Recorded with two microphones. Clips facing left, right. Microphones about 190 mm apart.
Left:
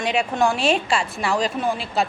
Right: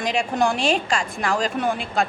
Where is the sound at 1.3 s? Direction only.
45° right (ahead or behind).